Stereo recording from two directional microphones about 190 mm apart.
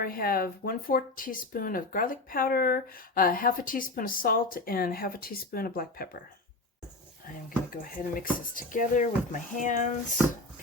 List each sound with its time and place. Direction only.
0.0 s speech: 50° left (ahead or behind)
7.7 s speech: 50° left (ahead or behind)